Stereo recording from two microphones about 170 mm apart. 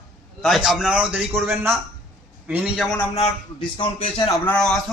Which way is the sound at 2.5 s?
5° right (ahead or behind).